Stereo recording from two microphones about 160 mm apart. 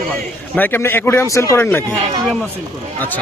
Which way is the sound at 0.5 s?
10° left (ahead or behind).